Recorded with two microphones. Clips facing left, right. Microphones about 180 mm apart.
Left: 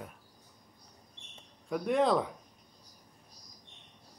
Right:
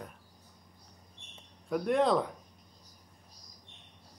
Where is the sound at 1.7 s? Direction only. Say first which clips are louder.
Right 1 dB; centre (ahead or behind).